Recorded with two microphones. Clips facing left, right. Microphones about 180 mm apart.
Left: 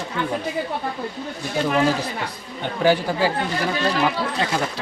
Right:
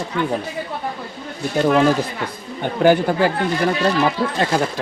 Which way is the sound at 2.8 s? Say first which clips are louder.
Right 4 dB; 55° right (ahead or behind).